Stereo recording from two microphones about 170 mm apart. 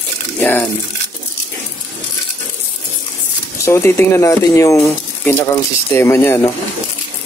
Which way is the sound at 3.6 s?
15° left (ahead or behind).